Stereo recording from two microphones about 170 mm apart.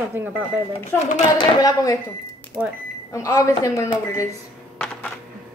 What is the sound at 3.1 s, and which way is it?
Speech, 20° left (ahead or behind).